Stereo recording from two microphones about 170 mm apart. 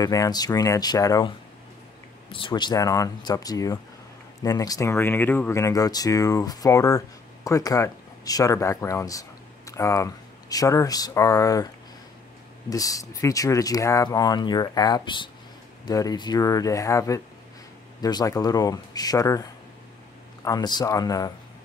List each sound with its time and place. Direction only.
0.0 s speech: 20° left (ahead or behind)
2.3 s speech: 25° left (ahead or behind)
20.4 s speech: 25° left (ahead or behind)